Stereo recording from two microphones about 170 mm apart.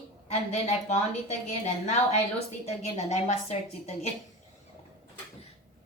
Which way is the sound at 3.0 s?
40° left (ahead or behind).